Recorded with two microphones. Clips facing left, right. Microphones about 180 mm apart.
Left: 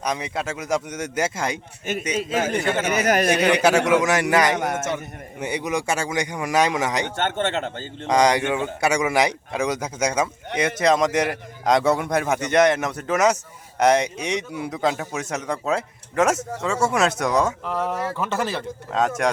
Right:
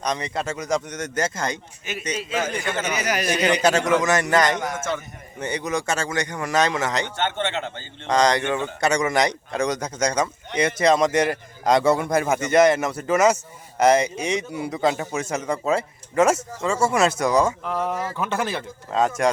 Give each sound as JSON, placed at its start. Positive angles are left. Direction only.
{"t": 0.0, "sound": "speech", "side_deg": 5}
{"t": 2.1, "sound": "a man's voice", "side_deg": 50}
{"t": 3.4, "sound": "speech", "side_deg": 10}
{"t": 4.5, "sound": "speech", "side_deg": 60}
{"t": 5.4, "sound": "speech", "side_deg": 10}
{"t": 7.2, "sound": "a man's voice", "side_deg": 45}
{"t": 8.0, "sound": "a man's voice", "side_deg": 10}